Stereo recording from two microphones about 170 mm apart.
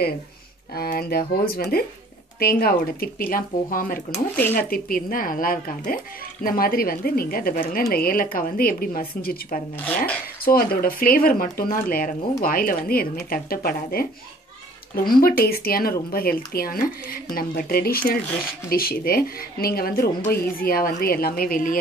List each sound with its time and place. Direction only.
0.7 s speech: 65° left (ahead or behind)
9.8 s speech: 10° left (ahead or behind)
10.4 s speech: 60° left (ahead or behind)
15.0 s speech: 60° left (ahead or behind)